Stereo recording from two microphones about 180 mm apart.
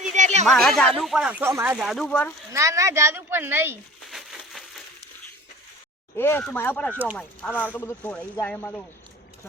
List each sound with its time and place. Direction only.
0.1 s a sound: 40° right (ahead or behind)
0.4 s speech: 5° left (ahead or behind); by 1.7 s 15° right (ahead or behind)
1.7 s speech: centre (ahead or behind)
2.5 s speech: 15° right (ahead or behind)
4.1 s crushing: centre (ahead or behind)
6.1 s speech: 10° left (ahead or behind)